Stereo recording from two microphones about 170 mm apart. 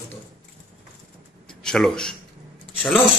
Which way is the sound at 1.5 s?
5° left (ahead or behind).